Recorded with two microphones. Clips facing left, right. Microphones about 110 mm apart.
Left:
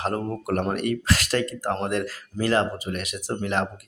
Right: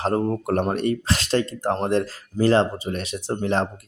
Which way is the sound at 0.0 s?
30° right (ahead or behind).